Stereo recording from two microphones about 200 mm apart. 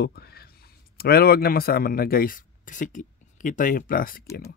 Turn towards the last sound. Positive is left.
turn(degrees=45)  # may be behind; listen again after turning